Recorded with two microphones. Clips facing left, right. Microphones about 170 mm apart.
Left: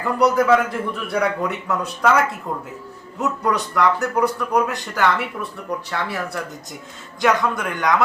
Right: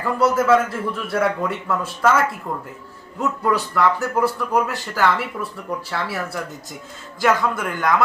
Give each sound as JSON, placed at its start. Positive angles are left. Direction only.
{"t": 0.0, "sound": "a man's voice", "side_deg": 0}